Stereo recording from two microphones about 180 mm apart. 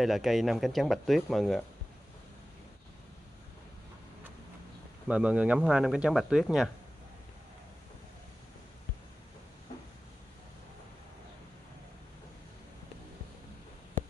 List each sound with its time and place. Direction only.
0.0 s speech: centre (ahead or behind)
5.0 s speech: 5° right (ahead or behind)